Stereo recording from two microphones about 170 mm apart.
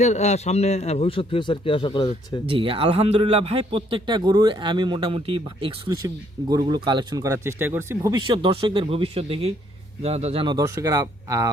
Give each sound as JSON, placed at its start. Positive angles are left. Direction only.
{"t": 0.0, "sound": "a man's voice", "side_deg": 40}
{"t": 2.5, "sound": "a man's voice", "side_deg": -30}